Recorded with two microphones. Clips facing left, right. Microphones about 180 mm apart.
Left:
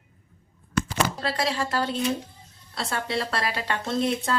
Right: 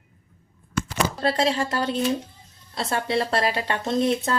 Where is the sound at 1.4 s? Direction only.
25° right (ahead or behind).